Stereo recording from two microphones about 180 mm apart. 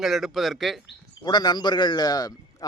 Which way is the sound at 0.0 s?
Centre (ahead or behind).